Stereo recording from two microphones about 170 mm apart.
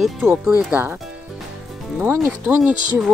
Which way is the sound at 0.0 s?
Centre (ahead or behind).